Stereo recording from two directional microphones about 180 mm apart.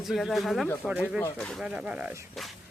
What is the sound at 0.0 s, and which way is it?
Speech, centre (ahead or behind).